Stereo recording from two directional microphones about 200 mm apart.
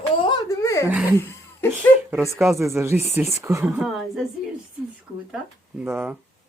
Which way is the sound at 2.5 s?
15° right (ahead or behind).